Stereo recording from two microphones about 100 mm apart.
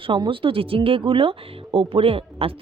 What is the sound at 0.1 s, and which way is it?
Speech, 60° right (ahead or behind).